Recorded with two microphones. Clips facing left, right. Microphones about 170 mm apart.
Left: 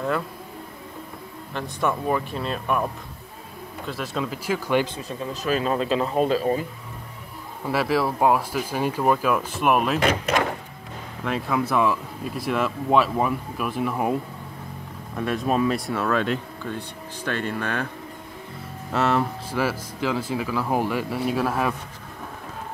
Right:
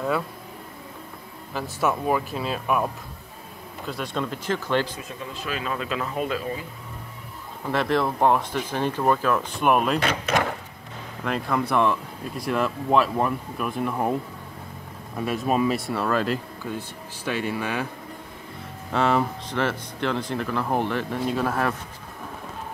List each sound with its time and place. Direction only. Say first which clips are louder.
1.5 s speech: even; 5° right (ahead or behind); by 4.8 s 10° left (ahead or behind)
5.3 s speech: left 7 dB; 40° left (ahead or behind)
7.6 s speech: left 1 dB; 5° left (ahead or behind)
11.2 s speech: left 1 dB; centre (ahead or behind)
15.1 s speech: left 1 dB; 5° right (ahead or behind)
18.9 s speech: even; centre (ahead or behind)